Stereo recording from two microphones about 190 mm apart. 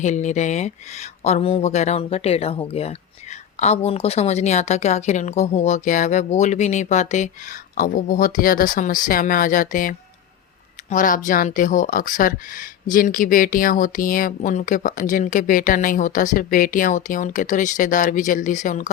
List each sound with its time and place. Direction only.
0.0 s a woman's voice: 40° left (ahead or behind)